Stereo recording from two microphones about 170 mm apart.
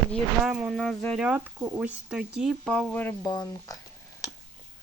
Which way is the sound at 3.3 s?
25° left (ahead or behind).